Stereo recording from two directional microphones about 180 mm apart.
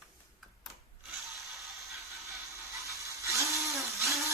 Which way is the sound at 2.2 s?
15° right (ahead or behind).